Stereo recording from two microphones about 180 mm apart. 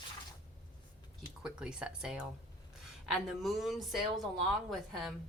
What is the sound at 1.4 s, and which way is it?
Speech, 5° right (ahead or behind).